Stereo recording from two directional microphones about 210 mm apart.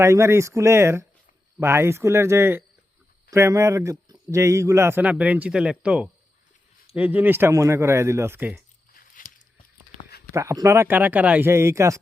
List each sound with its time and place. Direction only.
0.0 s speech: 15° right (ahead or behind)
8.9 s biting: 40° left (ahead or behind)
10.3 s speech: 15° right (ahead or behind)